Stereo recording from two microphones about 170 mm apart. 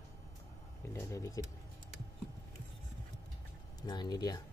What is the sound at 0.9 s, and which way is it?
Speech, 20° left (ahead or behind).